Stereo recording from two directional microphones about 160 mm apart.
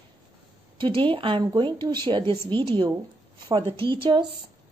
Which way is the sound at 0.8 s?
30° right (ahead or behind).